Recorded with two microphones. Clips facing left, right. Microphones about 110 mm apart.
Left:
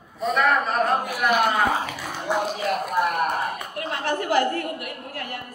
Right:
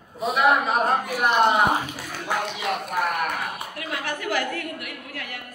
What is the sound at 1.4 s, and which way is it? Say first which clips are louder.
Speech: right 2 dB; 25° right (ahead or behind).